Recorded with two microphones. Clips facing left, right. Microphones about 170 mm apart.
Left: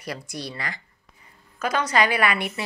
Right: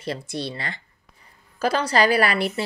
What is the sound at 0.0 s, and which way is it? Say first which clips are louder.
A woman's voice: right 4 dB; 25° right (ahead or behind).